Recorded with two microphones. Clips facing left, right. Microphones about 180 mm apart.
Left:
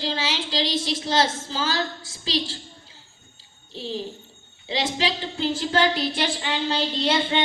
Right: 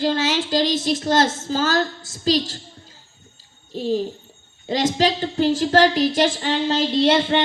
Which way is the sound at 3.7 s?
45° right (ahead or behind).